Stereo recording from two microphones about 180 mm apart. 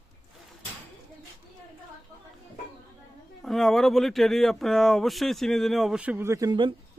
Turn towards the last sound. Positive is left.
turn(degrees=-25)  # may be behind; listen again after turning